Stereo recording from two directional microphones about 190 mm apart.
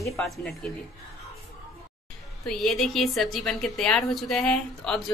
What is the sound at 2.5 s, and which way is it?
A woman's voice, centre (ahead or behind).